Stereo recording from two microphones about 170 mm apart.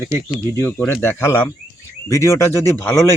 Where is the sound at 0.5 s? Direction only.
15° left (ahead or behind).